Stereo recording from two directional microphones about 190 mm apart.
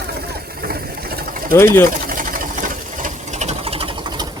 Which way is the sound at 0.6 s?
50° right (ahead or behind).